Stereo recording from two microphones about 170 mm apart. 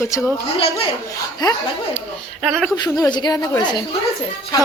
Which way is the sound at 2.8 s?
25° left (ahead or behind).